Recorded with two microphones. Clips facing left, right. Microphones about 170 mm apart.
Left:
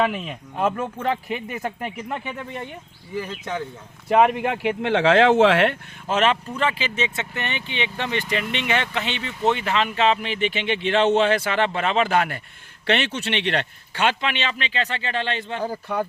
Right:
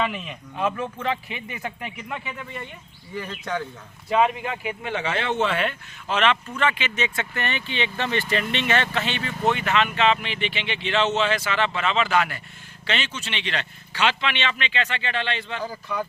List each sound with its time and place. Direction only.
0.0 s speech: 45° left (ahead or behind)
3.2 s speech: 5° left (ahead or behind)
4.1 s speech: 60° left (ahead or behind); by 5.7 s 85° left
6.1 s speech: 40° left (ahead or behind)
12.8 s speech: 60° left (ahead or behind)